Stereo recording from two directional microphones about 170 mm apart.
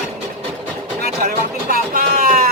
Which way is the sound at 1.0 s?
55° right (ahead or behind).